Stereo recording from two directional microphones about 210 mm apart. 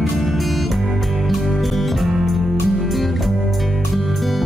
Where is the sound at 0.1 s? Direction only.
Centre (ahead or behind).